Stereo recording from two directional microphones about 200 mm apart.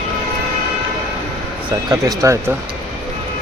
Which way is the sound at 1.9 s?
15° right (ahead or behind).